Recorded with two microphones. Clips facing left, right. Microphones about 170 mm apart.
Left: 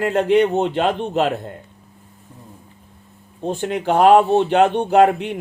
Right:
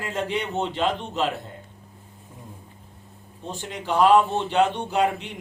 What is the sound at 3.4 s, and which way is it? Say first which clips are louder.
Speech: left 12 dB; 60° left (ahead or behind).